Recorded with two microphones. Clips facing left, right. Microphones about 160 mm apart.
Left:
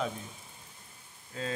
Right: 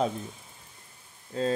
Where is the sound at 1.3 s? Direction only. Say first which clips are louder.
Right 9 dB; 35° right (ahead or behind).